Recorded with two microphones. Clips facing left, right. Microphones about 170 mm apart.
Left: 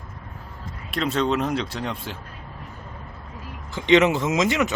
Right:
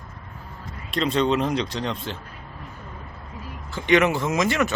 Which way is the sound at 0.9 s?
5° left (ahead or behind).